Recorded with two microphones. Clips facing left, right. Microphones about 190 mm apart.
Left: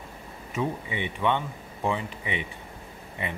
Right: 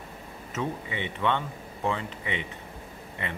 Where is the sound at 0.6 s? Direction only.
15° left (ahead or behind).